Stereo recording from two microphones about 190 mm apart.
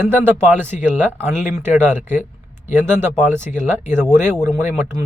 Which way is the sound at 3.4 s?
40° left (ahead or behind).